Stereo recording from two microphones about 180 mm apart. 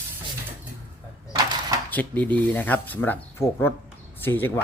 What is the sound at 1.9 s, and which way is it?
Speech, 10° left (ahead or behind).